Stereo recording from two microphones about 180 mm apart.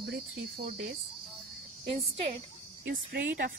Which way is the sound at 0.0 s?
60° right (ahead or behind).